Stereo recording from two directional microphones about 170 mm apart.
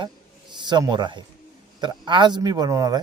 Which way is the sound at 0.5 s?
25° right (ahead or behind).